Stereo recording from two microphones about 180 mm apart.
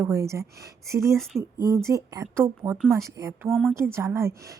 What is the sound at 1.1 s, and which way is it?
Speech, centre (ahead or behind).